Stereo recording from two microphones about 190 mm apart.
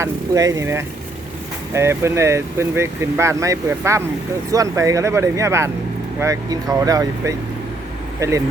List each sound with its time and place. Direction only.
0.0 s speech: 15° right (ahead or behind)